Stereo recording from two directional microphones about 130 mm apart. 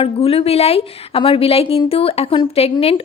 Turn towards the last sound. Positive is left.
turn(degrees=45)  # may be behind; listen again after turning